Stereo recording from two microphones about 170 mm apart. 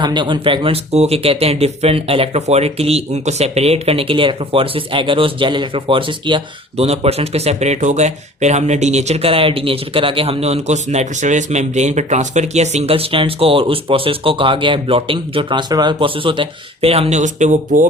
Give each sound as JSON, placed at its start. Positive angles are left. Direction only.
{"t": 0.0, "sound": "speech", "side_deg": -25}